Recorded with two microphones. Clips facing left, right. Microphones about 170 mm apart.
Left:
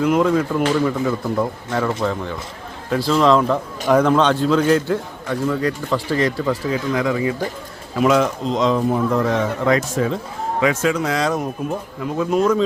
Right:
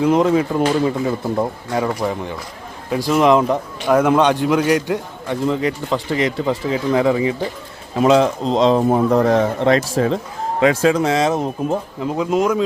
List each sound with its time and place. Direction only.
0.0 s a man's voice: 25° right (ahead or behind)
3.8 s a man's voice: 5° right (ahead or behind)